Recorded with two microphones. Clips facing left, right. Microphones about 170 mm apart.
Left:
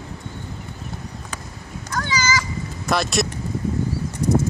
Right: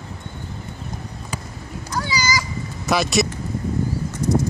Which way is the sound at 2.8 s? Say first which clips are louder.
Right 2 dB; centre (ahead or behind).